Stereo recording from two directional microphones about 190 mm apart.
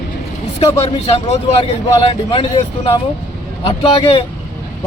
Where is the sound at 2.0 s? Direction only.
30° left (ahead or behind).